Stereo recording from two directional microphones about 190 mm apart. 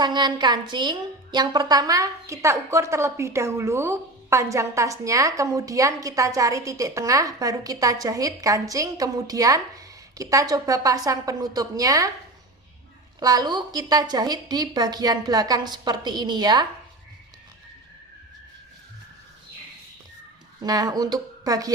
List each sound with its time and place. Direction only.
0.0 s a woman's voice: 20° right (ahead or behind)
13.1 s a woman's voice: 20° right (ahead or behind)
20.6 s a woman's voice: 20° right (ahead or behind)